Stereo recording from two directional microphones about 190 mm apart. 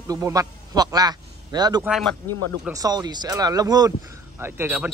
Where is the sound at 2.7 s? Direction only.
20° right (ahead or behind).